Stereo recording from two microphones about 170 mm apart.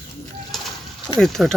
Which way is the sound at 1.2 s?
Centre (ahead or behind).